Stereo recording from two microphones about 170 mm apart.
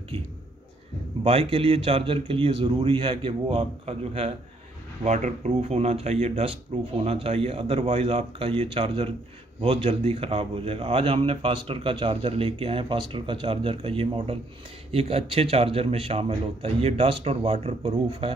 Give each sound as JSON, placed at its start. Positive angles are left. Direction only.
{"t": 0.1, "sound": "a man's voice", "side_deg": -35}